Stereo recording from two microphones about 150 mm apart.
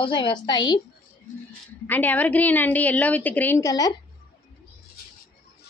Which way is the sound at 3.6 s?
25° left (ahead or behind).